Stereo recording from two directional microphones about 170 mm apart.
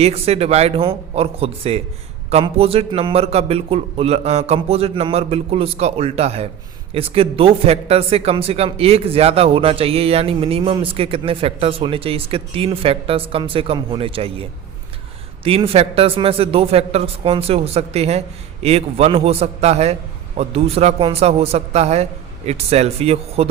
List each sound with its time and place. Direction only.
0.0 s speech: 35° right (ahead or behind)
15.4 s speech: 35° right (ahead or behind)